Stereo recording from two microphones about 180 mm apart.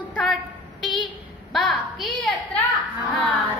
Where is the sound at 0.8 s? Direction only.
25° left (ahead or behind).